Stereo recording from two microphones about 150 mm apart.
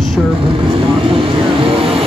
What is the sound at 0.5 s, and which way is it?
Speech, 35° right (ahead or behind).